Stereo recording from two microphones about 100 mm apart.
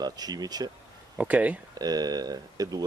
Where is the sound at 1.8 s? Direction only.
40° right (ahead or behind).